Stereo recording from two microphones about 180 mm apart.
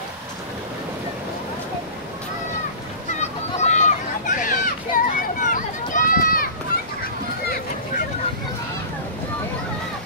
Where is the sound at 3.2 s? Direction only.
40° left (ahead or behind).